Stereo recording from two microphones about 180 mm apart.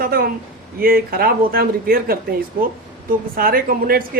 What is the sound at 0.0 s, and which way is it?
Speech, 55° right (ahead or behind).